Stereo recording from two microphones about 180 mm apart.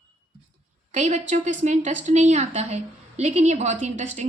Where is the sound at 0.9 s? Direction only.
40° right (ahead or behind).